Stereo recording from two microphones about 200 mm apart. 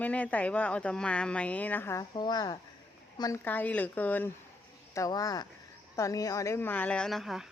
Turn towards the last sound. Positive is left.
turn(degrees=0)  # may be behind; listen again after turning